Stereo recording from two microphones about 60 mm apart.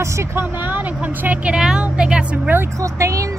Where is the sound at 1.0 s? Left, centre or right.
Right.